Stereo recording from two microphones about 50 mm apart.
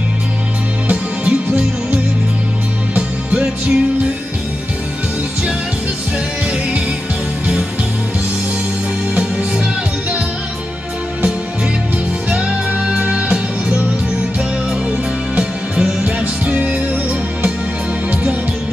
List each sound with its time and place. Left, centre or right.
0.8 s music: right
2.9 s music: right
9.1 s music: centre
12.3 s music: centre
15.3 s music: centre
16.4 s music: right